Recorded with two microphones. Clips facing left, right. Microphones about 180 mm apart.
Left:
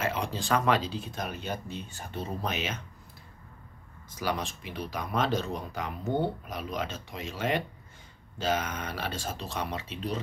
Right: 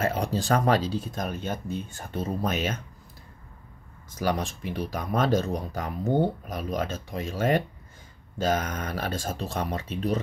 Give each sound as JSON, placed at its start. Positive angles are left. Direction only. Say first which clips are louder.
{"t": 0.0, "sound": "speech", "louder": "right 5 dB", "side_deg": -40}
{"t": 4.1, "sound": "speech", "louder": "right 4 dB", "side_deg": -45}